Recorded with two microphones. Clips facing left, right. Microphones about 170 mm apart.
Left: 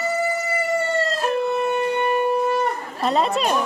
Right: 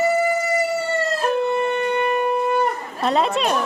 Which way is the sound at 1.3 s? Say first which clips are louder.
Even; centre (ahead or behind).